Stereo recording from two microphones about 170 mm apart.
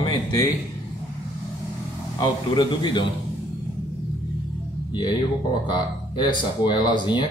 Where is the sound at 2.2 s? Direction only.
25° left (ahead or behind).